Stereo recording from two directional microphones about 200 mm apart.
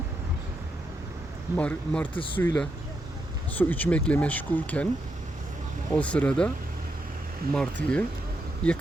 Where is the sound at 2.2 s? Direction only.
25° left (ahead or behind).